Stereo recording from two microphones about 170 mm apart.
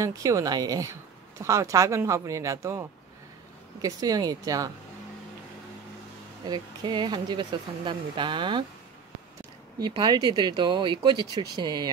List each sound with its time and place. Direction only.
0.0 s speech: 20° right (ahead or behind)
6.4 s speech: 25° right (ahead or behind)
9.8 s speech: 25° right (ahead or behind)